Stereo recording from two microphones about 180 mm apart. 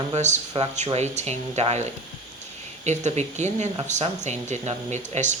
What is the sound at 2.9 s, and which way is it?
Speech, 40° right (ahead or behind).